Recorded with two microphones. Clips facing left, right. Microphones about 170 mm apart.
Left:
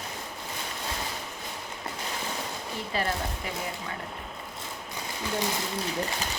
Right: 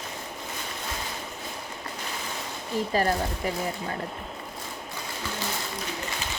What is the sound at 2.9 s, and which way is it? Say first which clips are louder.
Speech: right 4 dB; 40° right (ahead or behind).